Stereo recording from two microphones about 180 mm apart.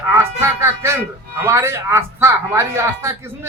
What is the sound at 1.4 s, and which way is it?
A man's voice, 15° right (ahead or behind).